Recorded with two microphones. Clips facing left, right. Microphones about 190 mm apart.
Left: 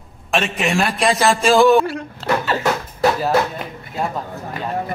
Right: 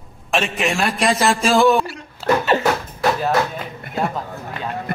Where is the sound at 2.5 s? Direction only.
25° right (ahead or behind).